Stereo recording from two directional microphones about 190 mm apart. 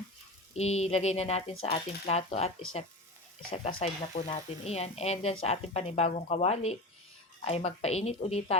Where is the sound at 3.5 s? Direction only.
30° left (ahead or behind).